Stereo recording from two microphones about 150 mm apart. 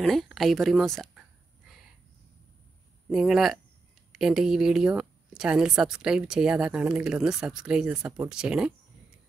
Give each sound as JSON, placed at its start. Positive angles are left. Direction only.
{"t": 0.0, "sound": "a woman's voice", "side_deg": 0}
{"t": 3.1, "sound": "a woman's voice", "side_deg": 0}